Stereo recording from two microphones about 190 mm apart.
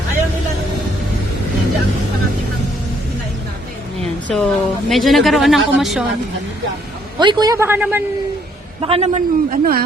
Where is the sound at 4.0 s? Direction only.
Centre (ahead or behind).